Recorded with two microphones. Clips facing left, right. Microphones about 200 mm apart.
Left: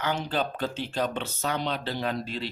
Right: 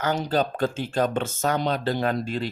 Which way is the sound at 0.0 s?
40° right (ahead or behind).